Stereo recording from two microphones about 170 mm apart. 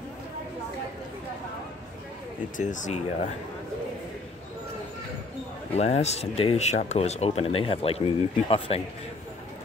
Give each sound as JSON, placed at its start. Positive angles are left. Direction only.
{"t": 2.5, "sound": "speech", "side_deg": 45}
{"t": 5.8, "sound": "speech", "side_deg": 40}